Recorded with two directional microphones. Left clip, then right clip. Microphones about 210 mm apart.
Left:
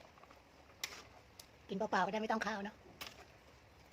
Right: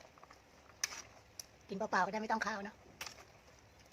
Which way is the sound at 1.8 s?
15° left (ahead or behind).